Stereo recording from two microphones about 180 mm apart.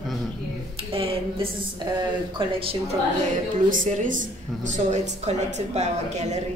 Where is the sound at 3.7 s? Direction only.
45° right (ahead or behind).